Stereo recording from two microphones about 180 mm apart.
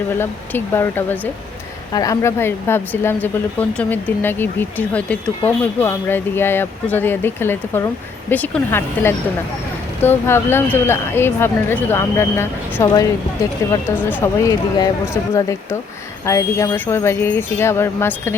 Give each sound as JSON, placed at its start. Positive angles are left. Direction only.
{"t": 0.2, "sound": "speech", "side_deg": 10}